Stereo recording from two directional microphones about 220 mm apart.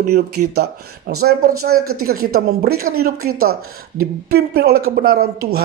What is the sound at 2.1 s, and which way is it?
Speech, 40° right (ahead or behind).